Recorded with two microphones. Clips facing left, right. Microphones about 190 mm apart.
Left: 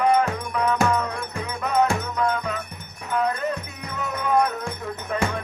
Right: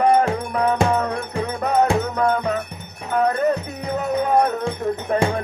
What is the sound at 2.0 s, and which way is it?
Music, 60° right (ahead or behind).